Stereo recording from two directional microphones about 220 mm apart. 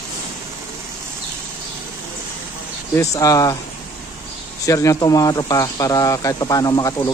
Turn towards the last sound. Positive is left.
turn(degrees=15)  # may be behind; listen again after turning